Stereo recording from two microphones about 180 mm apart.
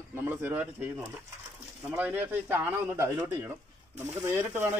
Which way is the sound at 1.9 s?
10° right (ahead or behind).